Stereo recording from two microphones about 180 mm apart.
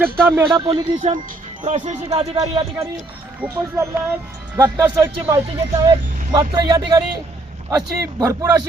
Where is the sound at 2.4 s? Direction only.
30° right (ahead or behind).